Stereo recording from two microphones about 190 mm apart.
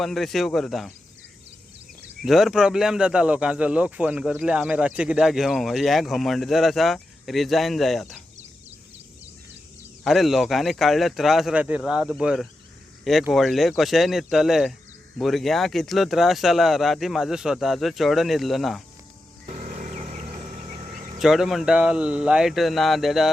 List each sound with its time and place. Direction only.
0.0 s speech: centre (ahead or behind)
2.2 s speech: centre (ahead or behind)
10.0 s speech: centre (ahead or behind)
19.5 s a sound: 45° right (ahead or behind)
21.2 s speech: centre (ahead or behind)